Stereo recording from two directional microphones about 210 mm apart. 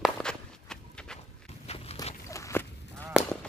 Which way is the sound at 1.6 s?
30° left (ahead or behind).